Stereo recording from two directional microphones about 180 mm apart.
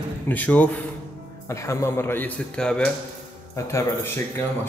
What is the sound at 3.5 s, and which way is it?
Speech, 15° left (ahead or behind).